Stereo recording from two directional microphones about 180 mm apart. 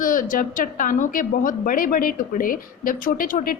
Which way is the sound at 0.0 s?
50° left (ahead or behind).